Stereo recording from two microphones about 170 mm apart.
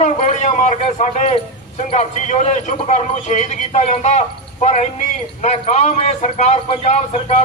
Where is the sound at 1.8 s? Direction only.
40° left (ahead or behind).